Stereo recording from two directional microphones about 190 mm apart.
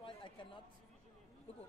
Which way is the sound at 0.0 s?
25° left (ahead or behind).